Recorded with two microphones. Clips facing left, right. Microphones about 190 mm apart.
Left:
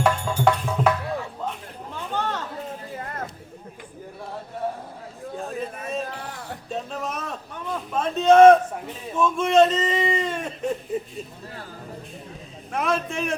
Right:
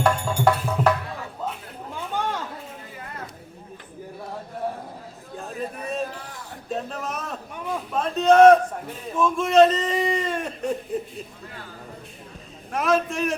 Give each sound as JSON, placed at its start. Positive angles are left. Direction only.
{"t": 0.0, "sound": "music", "side_deg": 0}
{"t": 1.5, "sound": "chatter", "side_deg": -10}
{"t": 5.4, "sound": "a sound", "side_deg": 0}
{"t": 6.1, "sound": "music", "side_deg": 65}
{"t": 6.7, "sound": "a sound", "side_deg": 0}
{"t": 12.7, "sound": "a man's voice", "side_deg": 0}